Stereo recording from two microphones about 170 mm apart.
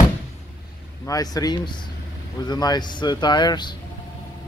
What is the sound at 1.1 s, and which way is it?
Speech, 20° left (ahead or behind).